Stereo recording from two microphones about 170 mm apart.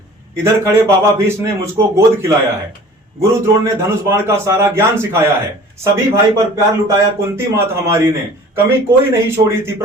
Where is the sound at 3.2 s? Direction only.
15° right (ahead or behind).